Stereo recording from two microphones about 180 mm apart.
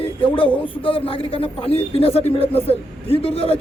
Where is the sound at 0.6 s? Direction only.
30° left (ahead or behind).